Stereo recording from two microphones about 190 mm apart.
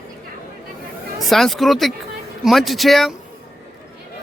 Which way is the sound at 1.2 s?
Centre (ahead or behind).